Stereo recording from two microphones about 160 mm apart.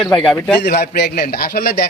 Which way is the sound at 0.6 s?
80° left.